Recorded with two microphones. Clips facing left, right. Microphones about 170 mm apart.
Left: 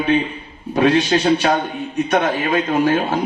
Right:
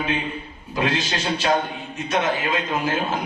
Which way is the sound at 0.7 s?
70° left (ahead or behind).